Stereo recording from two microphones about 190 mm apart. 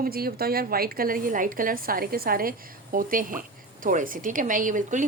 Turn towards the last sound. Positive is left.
turn(degrees=-40)  # may be behind; listen again after turning